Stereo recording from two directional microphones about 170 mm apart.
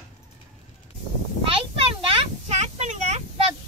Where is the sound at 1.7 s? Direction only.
35° right (ahead or behind).